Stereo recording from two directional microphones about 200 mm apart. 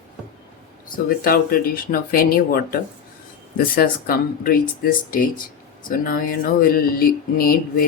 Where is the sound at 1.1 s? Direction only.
45° left (ahead or behind).